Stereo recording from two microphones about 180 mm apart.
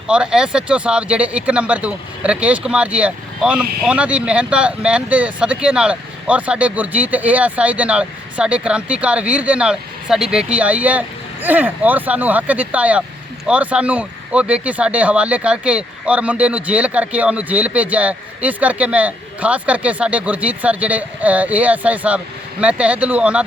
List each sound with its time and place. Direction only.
0.1 s speech: 5° right (ahead or behind)